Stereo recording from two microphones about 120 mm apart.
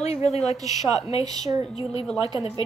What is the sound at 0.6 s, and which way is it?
Speech, 30° right (ahead or behind).